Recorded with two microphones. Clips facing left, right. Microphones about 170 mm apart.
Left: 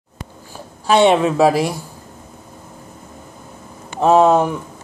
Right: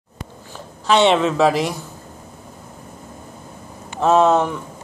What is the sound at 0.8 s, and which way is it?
Speech, 10° left (ahead or behind).